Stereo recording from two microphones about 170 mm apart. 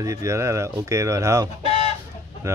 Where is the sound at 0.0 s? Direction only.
20° right (ahead or behind).